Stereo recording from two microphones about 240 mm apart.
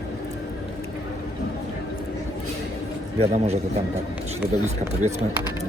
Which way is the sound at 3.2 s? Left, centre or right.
Right.